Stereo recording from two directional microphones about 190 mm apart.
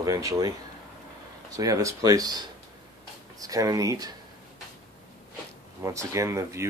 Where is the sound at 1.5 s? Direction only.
20° right (ahead or behind).